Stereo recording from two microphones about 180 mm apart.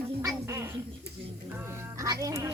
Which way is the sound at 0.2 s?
15° right (ahead or behind).